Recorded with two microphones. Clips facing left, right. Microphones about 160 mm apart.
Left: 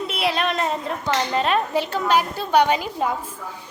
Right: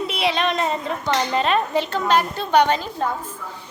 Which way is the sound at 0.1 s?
Centre (ahead or behind).